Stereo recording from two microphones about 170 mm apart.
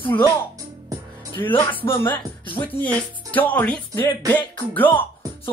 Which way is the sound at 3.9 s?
20° left (ahead or behind).